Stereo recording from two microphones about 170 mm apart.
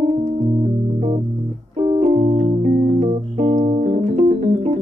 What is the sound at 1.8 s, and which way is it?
Keyboard, 35° right (ahead or behind).